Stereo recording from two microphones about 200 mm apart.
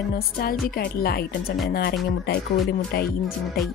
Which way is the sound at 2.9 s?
50° left (ahead or behind).